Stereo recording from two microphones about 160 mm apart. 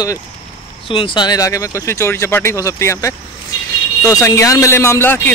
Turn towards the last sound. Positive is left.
turn(degrees=15)  # may be behind; listen again after turning